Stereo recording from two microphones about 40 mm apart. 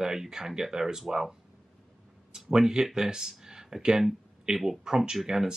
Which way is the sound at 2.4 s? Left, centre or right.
Centre.